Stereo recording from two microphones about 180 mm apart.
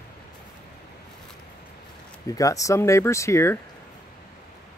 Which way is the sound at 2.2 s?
20° left (ahead or behind).